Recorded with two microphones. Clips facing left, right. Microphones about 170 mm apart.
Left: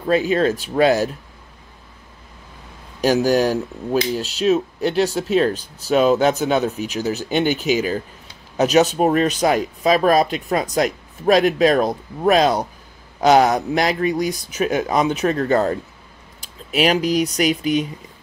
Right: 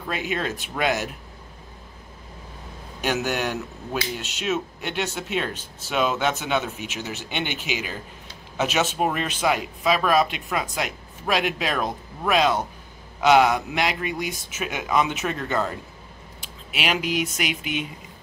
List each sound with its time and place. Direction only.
0.0 s speech: 35° left (ahead or behind)
3.0 s speech: 35° left (ahead or behind)